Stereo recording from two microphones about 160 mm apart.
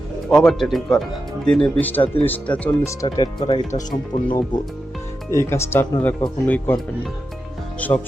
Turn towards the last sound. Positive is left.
turn(degrees=10)  # may be behind; listen again after turning